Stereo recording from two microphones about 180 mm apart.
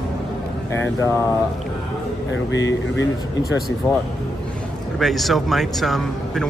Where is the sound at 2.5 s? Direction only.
90° left.